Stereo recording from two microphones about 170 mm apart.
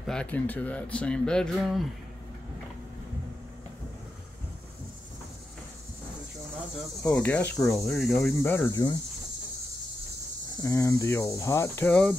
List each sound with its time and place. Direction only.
0.0 s speech: 5° left (ahead or behind)
7.0 s cricket: 15° left (ahead or behind)
7.7 s speech: centre (ahead or behind)
8.4 s cricket: 10° left (ahead or behind)
10.6 s cricket: 20° left (ahead or behind)